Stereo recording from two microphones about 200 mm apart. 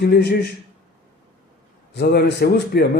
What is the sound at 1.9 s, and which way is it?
A man's voice, 55° left (ahead or behind).